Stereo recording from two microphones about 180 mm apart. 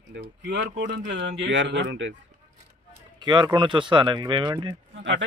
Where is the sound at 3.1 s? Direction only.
25° right (ahead or behind).